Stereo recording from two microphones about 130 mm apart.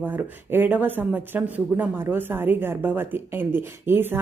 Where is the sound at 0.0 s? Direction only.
15° right (ahead or behind).